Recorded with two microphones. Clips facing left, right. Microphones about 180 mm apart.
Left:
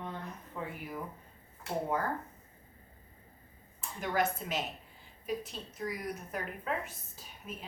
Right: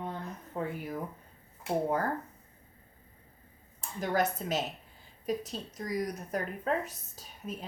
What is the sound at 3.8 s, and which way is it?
A woman's voice, 40° right (ahead or behind).